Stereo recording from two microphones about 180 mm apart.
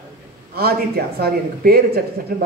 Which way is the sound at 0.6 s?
60° right (ahead or behind).